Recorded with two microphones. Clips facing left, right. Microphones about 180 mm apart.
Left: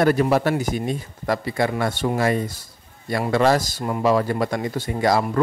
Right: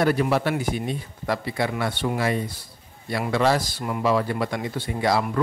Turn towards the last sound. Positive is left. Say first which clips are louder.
# left 3 dB
turn(degrees=45)  # may be behind; listen again after turning